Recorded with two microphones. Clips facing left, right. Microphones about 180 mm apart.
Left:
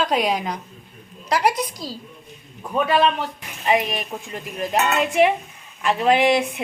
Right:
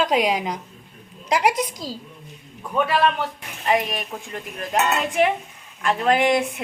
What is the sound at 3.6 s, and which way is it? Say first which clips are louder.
A woman's voice: left 1 dB; 5° left (ahead or behind).